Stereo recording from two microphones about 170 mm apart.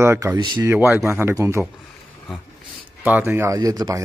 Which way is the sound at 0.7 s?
15° right (ahead or behind).